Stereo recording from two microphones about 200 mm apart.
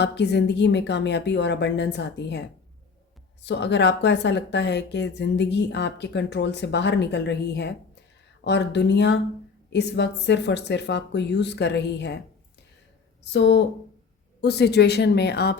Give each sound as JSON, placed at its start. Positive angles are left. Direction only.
{"t": 0.0, "sound": "speech", "side_deg": 55}
{"t": 3.4, "sound": "speech", "side_deg": 60}
{"t": 13.3, "sound": "speech", "side_deg": 60}